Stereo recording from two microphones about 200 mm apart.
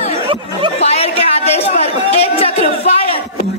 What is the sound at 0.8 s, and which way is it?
A man's voice, 30° left (ahead or behind).